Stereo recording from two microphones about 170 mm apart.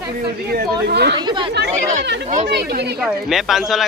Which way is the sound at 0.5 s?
70° right (ahead or behind).